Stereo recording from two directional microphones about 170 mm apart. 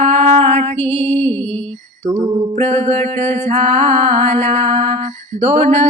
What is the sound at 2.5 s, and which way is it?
Music, 40° right (ahead or behind).